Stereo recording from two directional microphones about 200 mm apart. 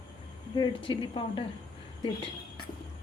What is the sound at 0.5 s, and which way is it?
Speech, 20° left (ahead or behind).